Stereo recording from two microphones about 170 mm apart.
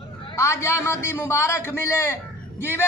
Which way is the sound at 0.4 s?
15° left (ahead or behind).